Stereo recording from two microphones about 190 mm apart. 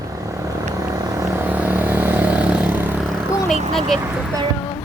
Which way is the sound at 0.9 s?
20° right (ahead or behind).